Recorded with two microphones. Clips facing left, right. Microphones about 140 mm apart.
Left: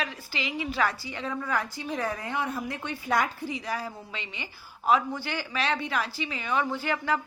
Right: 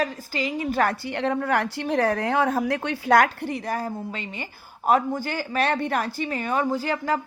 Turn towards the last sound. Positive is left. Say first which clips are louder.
# right 4 dB
turn(degrees=-40)  # may be behind; listen again after turning